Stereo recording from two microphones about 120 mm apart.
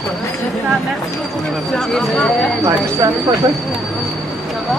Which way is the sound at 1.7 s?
5° left (ahead or behind).